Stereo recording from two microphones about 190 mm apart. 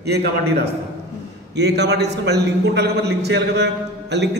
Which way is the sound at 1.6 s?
60° right (ahead or behind).